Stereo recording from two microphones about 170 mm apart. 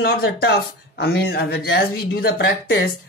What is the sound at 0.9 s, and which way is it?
Speech, 80° left.